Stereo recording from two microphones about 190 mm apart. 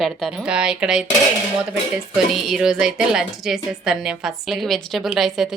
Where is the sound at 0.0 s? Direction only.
Centre (ahead or behind).